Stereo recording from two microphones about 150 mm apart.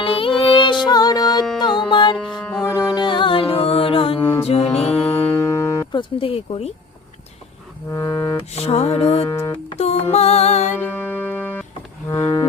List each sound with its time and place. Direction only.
0.0 s music: 35° left (ahead or behind)
2.4 s music: 10° left (ahead or behind)
2.7 s music: 25° left (ahead or behind); by 5.0 s 45° left (ahead or behind)
5.0 s music: 15° left (ahead or behind)
6.0 s speech: 35° left (ahead or behind)
7.9 s music: 20° left (ahead or behind)
8.4 s music: 45° left (ahead or behind)
9.2 s music: 20° left (ahead or behind)
9.6 s music: 45° left (ahead or behind)
10.8 s music: 10° left (ahead or behind)